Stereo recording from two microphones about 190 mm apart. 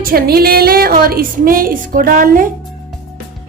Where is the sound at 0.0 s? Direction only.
50° right (ahead or behind).